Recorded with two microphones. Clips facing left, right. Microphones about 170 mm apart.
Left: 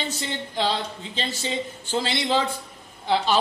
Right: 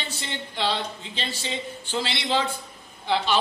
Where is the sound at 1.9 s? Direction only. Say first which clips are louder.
Left 3 dB; 45° left (ahead or behind).